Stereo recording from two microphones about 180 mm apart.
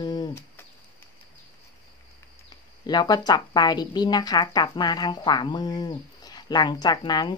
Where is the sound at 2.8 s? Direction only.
25° left (ahead or behind).